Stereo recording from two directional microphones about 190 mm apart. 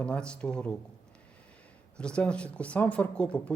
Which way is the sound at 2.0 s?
5° left (ahead or behind).